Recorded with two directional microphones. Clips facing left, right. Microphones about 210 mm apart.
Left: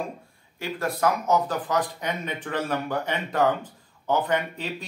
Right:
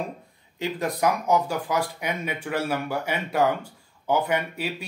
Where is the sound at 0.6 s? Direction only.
15° right (ahead or behind).